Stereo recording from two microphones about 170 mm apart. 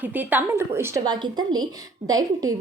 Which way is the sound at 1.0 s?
25° right (ahead or behind).